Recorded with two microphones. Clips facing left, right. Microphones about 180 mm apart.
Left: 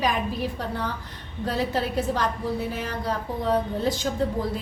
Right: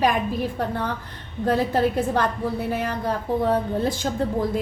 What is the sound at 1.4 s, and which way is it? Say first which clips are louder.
A woman's voice: right 5 dB; 50° right (ahead or behind).